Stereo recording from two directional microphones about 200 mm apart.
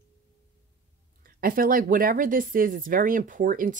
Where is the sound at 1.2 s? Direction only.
45° right (ahead or behind).